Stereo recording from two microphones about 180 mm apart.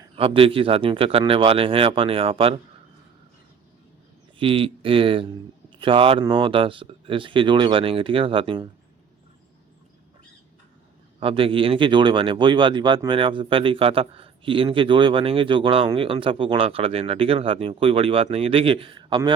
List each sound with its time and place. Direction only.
0.2 s speech: 30° right (ahead or behind)
4.4 s speech: 30° right (ahead or behind)
11.2 s speech: 30° right (ahead or behind)